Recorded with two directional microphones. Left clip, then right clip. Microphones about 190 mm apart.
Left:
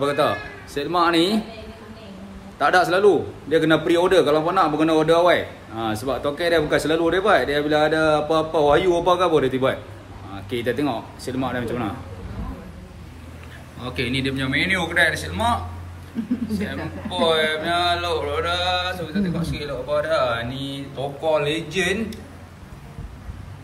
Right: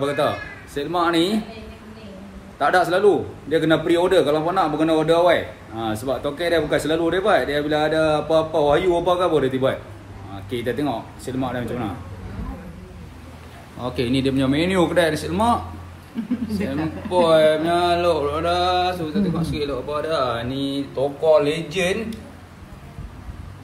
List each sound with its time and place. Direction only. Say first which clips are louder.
0.0 s a man's voice: left 1 dB; 5° left (ahead or behind)
2.6 s a man's voice: even; centre (ahead or behind)
13.7 s a man's voice: right 2 dB; 10° right (ahead or behind)